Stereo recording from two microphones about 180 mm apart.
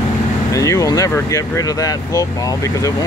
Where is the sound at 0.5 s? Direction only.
20° left (ahead or behind).